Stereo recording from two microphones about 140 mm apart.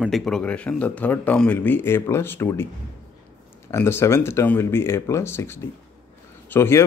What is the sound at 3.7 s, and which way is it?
Speech, 20° left (ahead or behind).